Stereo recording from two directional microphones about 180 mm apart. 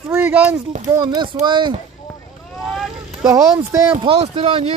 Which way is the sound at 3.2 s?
15° right (ahead or behind).